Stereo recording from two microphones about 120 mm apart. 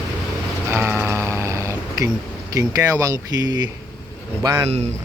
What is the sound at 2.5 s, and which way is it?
Speech, 30° right (ahead or behind).